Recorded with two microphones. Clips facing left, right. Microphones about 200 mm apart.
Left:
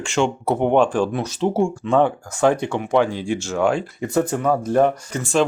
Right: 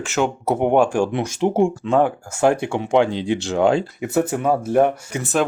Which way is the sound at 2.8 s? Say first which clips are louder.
Right 2 dB; 20° right (ahead or behind).